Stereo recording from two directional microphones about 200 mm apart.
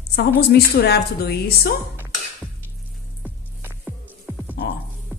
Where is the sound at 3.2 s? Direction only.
5° right (ahead or behind).